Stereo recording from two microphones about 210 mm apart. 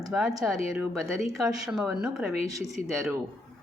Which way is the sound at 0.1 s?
5° right (ahead or behind).